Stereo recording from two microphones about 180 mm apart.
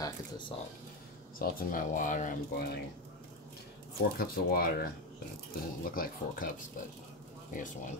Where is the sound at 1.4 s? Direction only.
55° left (ahead or behind).